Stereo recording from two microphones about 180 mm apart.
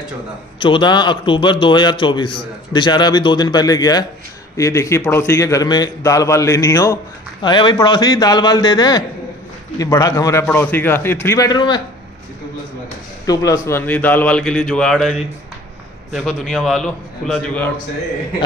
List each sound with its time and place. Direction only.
0.6 s a man's voice: 30° left (ahead or behind)
13.2 s a man's voice: 20° left (ahead or behind); by 17.6 s 5° left (ahead or behind)